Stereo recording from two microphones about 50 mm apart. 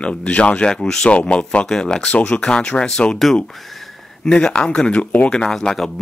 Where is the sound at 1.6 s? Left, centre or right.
Centre.